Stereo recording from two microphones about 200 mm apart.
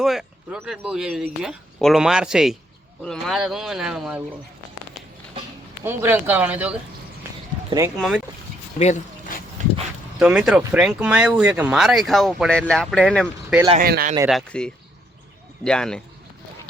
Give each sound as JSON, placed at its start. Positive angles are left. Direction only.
{"t": 0.0, "sound": "speech", "side_deg": 0}
{"t": 5.8, "sound": "speech", "side_deg": -10}
{"t": 7.9, "sound": "speech", "side_deg": 0}
{"t": 8.8, "sound": "a sound", "side_deg": 35}
{"t": 10.2, "sound": "speech", "side_deg": -5}
{"t": 13.7, "sound": "speech", "side_deg": -45}
{"t": 14.3, "sound": "speech", "side_deg": 0}